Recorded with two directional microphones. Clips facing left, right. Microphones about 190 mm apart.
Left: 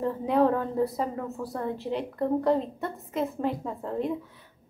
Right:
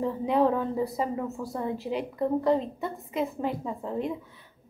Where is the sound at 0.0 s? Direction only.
Centre (ahead or behind).